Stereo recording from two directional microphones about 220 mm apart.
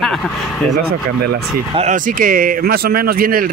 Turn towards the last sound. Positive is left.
turn(degrees=-40)  # may be behind; listen again after turning